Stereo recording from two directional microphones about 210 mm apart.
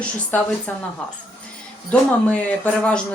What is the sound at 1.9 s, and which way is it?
A woman's voice, 5° left (ahead or behind).